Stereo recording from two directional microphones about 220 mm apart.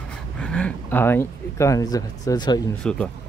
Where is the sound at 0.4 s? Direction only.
5° left (ahead or behind).